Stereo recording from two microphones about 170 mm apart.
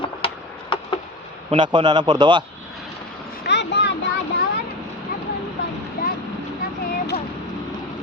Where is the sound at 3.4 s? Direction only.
90° left.